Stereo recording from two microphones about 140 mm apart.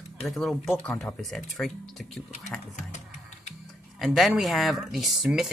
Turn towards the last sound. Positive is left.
turn(degrees=-5)  # may be behind; listen again after turning